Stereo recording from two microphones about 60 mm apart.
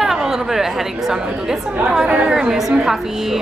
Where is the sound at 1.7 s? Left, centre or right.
Right.